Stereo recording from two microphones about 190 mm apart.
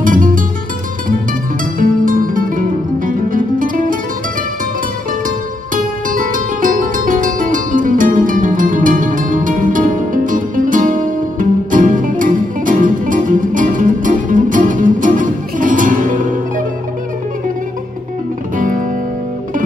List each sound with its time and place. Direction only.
0.0 s music: 45° right (ahead or behind)
1.8 s music: 45° right (ahead or behind)
6.0 s music: 45° right (ahead or behind)
18.6 s music: 45° right (ahead or behind)